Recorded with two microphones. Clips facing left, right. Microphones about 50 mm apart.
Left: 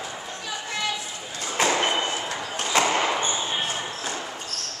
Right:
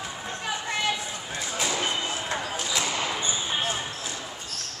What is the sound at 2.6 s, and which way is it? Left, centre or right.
Thump, left.